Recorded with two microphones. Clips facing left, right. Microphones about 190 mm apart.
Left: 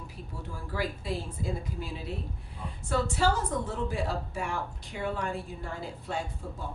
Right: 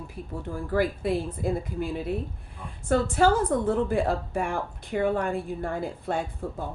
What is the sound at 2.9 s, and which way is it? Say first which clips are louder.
A woman's voice: right 6 dB; 55° right (ahead or behind).